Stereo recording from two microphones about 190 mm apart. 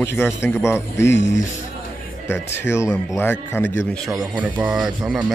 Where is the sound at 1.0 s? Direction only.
70° left (ahead or behind).